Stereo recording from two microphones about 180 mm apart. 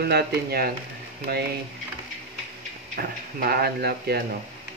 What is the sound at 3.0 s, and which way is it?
Speech, 55° right (ahead or behind).